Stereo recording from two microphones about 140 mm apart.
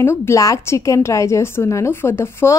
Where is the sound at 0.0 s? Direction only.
15° left (ahead or behind).